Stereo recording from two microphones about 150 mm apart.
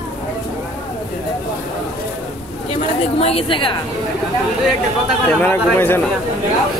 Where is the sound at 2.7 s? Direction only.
40° left (ahead or behind).